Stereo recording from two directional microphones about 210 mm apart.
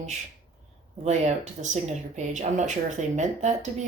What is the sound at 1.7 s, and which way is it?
Speech, 35° right (ahead or behind).